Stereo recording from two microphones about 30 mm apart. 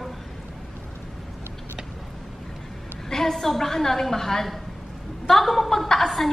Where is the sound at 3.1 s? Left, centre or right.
Centre.